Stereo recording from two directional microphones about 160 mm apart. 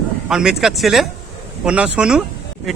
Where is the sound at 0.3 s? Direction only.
5° right (ahead or behind).